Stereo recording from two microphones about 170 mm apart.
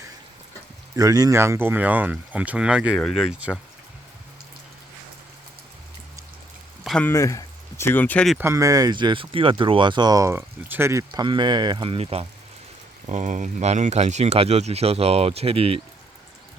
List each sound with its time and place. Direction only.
0.9 s speech: 20° right (ahead or behind); by 3.6 s centre (ahead or behind)
6.8 s a sound: 5° left (ahead or behind)
7.1 s speech: 20° left (ahead or behind)
8.4 s speech: 15° right (ahead or behind); by 12.2 s 35° right (ahead or behind)
13.1 s speech: 45° right (ahead or behind)